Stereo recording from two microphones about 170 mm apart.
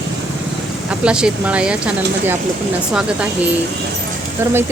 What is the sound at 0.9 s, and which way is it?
Speech, 5° right (ahead or behind).